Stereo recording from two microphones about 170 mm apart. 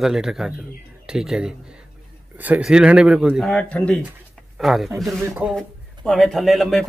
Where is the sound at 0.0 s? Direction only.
5° right (ahead or behind).